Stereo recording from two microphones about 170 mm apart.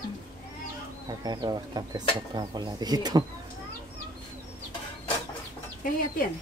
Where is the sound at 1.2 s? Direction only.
25° right (ahead or behind).